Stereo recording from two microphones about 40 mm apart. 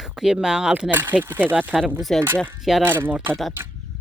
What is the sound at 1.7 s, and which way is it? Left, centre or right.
Speech, centre.